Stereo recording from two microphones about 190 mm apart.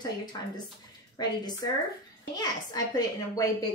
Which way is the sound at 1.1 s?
20° left (ahead or behind).